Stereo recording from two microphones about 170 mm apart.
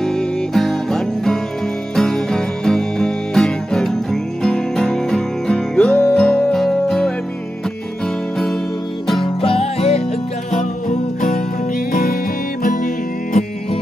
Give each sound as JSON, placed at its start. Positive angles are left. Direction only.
{"t": 0.0, "sound": "music", "side_deg": 0}
{"t": 9.2, "sound": "music", "side_deg": 35}
{"t": 10.6, "sound": "music", "side_deg": 50}